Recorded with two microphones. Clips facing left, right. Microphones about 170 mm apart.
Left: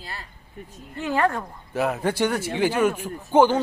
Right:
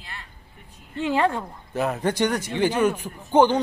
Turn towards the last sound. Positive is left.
turn(degrees=5)  # may be behind; listen again after turning